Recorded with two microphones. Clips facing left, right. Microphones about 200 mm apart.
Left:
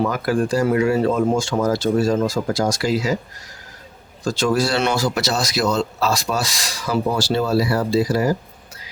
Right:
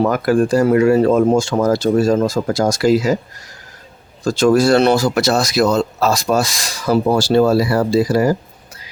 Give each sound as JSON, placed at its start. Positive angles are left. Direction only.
{"t": 0.0, "sound": "speech", "side_deg": -50}
{"t": 4.3, "sound": "speech", "side_deg": -50}
{"t": 5.0, "sound": "speech", "side_deg": -50}